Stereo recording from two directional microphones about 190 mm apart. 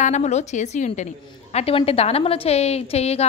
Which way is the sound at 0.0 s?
40° left (ahead or behind).